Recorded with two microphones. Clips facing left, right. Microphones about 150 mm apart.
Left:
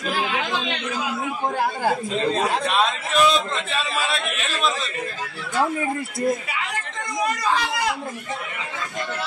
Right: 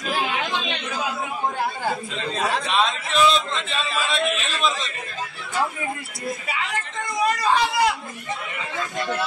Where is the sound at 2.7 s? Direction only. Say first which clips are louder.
Left 1 dB; 5° left (ahead or behind).